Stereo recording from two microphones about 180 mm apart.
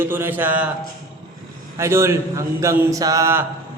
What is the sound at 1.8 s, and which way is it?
A man's voice, 15° right (ahead or behind).